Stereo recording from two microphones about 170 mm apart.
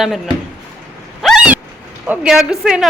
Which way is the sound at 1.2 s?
5° right (ahead or behind).